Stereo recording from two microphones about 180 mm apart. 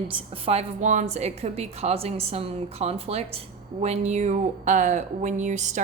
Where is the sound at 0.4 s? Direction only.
40° right (ahead or behind).